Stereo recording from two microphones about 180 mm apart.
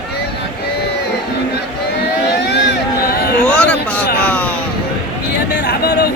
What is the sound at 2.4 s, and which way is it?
Vehicle, 70° left (ahead or behind).